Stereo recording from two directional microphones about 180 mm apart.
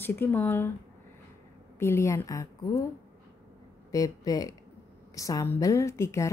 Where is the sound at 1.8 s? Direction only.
15° left (ahead or behind).